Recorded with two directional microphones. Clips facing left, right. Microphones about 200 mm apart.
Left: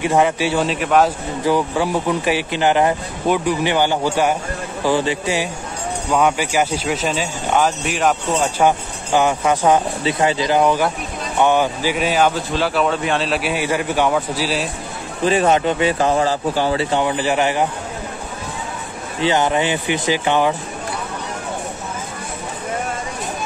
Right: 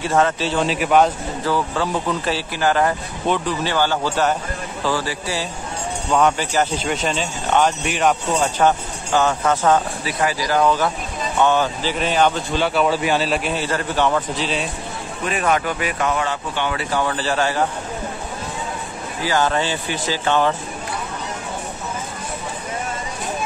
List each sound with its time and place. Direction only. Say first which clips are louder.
0.0 s speech: left 2 dB; 15° left (ahead or behind)
0.7 s a man's voice: right 2 dB; 5° right (ahead or behind)
1.4 s speech: left 4 dB; 15° left (ahead or behind)
6.0 s speech: left 1 dB; 10° left (ahead or behind)
10.0 s speech: left 4 dB; 25° left (ahead or behind); by 14.7 s 5° left (ahead or behind)
15.2 s speech: left 5 dB; 30° left (ahead or behind)
17.0 s speech: left 3 dB; 15° left (ahead or behind)
19.2 s speech: left 3 dB; 20° left (ahead or behind)